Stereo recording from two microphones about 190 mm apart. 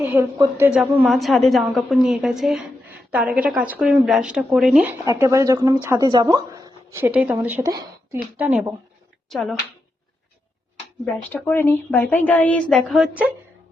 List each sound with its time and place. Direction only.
0.0 s a woman's voice: 10° right (ahead or behind)
9.3 s a woman's voice: centre (ahead or behind)
11.0 s a woman's voice: 5° left (ahead or behind)